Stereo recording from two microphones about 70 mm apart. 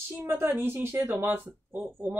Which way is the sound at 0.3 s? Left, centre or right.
Right.